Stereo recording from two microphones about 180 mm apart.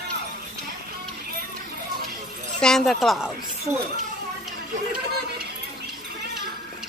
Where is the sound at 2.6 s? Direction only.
Centre (ahead or behind).